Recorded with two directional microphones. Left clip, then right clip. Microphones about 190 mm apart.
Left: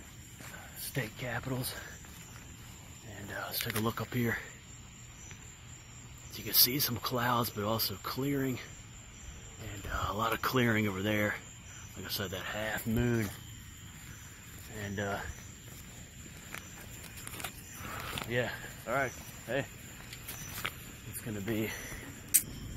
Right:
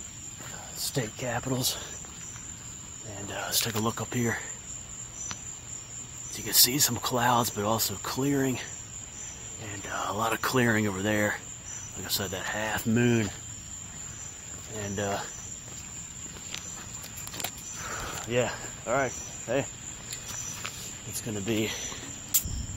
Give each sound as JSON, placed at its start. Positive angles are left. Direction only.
{"t": 0.9, "sound": "speech", "side_deg": -30}
{"t": 3.3, "sound": "speech", "side_deg": -30}
{"t": 3.8, "sound": "speech", "side_deg": -5}
{"t": 6.3, "sound": "speech", "side_deg": -10}
{"t": 9.7, "sound": "speech", "side_deg": -10}
{"t": 12.9, "sound": "speech", "side_deg": -35}
{"t": 14.8, "sound": "speech", "side_deg": -15}
{"t": 18.3, "sound": "speech", "side_deg": -20}
{"t": 20.6, "sound": "vehicle", "side_deg": 15}
{"t": 21.3, "sound": "speech", "side_deg": -20}